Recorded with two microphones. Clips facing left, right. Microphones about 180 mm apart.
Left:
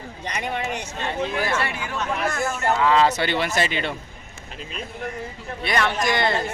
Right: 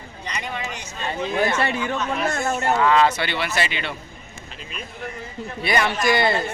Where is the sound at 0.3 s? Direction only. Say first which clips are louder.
Left 3 dB; 55° left (ahead or behind).